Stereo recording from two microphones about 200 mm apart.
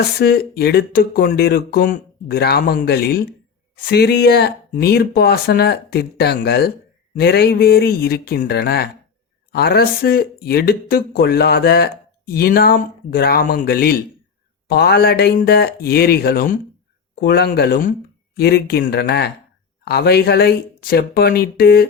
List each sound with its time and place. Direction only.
0.2 s speech: 50° left (ahead or behind)